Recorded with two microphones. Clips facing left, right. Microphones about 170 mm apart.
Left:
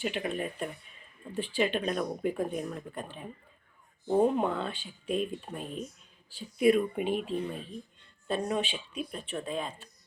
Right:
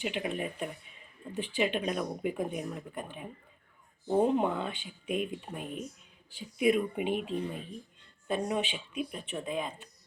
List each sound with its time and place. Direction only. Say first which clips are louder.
0.0 s speech: left 1 dB; 15° right (ahead or behind)
4.0 s speech: left 2 dB; centre (ahead or behind)
4.4 s speech: even; 15° right (ahead or behind)